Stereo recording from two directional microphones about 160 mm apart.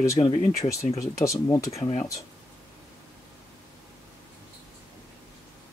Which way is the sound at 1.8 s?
40° left (ahead or behind).